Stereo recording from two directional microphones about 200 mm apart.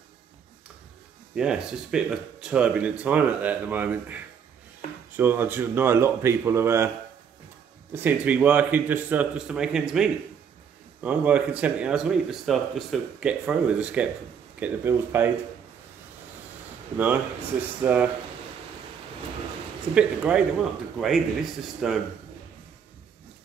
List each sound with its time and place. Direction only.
1.3 s speech: 5° right (ahead or behind)
7.9 s speech: 10° right (ahead or behind)
16.9 s speech: 10° right (ahead or behind)
19.9 s speech: 5° right (ahead or behind)
21.8 s speech: centre (ahead or behind)